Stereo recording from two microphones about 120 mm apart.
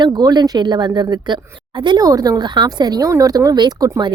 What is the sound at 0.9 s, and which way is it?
Speech, 25° right (ahead or behind).